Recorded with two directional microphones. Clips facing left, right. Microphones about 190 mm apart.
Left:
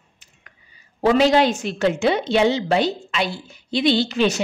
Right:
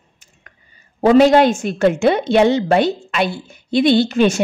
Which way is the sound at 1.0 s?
50° right (ahead or behind).